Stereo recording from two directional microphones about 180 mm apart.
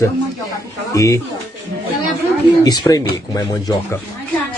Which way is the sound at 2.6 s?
20° left (ahead or behind).